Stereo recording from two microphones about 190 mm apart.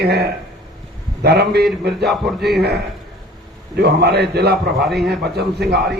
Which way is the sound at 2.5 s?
60° right (ahead or behind).